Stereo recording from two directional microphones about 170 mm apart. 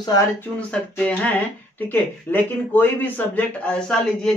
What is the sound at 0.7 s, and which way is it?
Speech, 5° left (ahead or behind).